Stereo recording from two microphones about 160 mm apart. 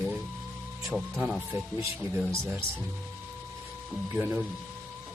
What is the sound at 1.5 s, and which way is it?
Speech, 15° right (ahead or behind).